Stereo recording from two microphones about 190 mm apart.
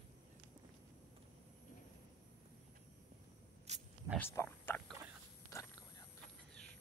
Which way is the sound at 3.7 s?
35° right (ahead or behind).